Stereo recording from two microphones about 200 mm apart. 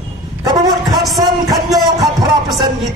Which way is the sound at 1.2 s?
20° right (ahead or behind).